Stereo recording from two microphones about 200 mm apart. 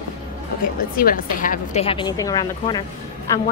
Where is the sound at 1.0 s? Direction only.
45° left (ahead or behind).